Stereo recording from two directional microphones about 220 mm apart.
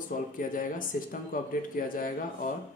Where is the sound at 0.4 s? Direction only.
40° left (ahead or behind).